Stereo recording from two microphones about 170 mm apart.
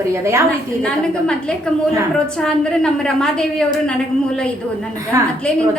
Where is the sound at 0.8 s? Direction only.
5° left (ahead or behind).